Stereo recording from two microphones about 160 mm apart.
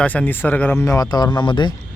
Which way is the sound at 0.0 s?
10° left (ahead or behind).